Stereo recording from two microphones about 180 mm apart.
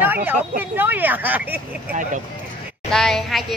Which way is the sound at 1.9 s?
45° right (ahead or behind).